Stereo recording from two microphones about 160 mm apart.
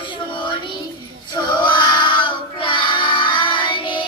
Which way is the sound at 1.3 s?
25° left (ahead or behind).